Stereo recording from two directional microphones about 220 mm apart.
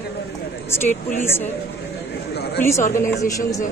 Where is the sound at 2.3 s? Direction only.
45° left (ahead or behind).